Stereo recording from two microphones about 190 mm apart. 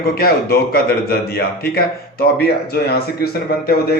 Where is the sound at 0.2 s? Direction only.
55° left (ahead or behind).